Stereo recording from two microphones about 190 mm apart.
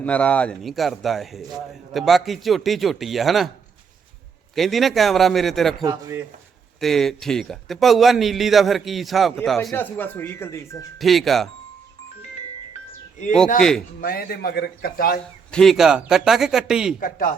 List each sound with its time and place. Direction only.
0.0 s speech: 5° left (ahead or behind)
4.5 s speech: centre (ahead or behind)
5.8 s speech: 20° right (ahead or behind)
6.7 s speech: centre (ahead or behind)
11.0 s speech: centre (ahead or behind)
13.6 s speech: 5° left (ahead or behind)
14.0 s a man's voice: 50° left (ahead or behind)
15.5 s speech: centre (ahead or behind)
17.0 s a man's voice: 45° left (ahead or behind)